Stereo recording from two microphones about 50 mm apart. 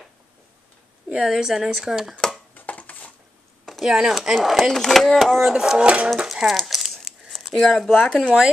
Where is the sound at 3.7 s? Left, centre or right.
Centre.